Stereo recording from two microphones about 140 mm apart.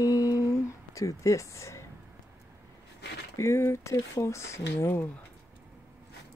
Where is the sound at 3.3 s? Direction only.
20° left (ahead or behind).